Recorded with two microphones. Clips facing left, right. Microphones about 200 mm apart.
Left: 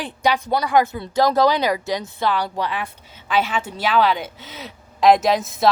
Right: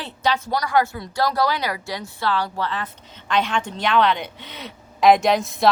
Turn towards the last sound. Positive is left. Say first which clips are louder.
# even
turn(degrees=0)  # may be behind; listen again after turning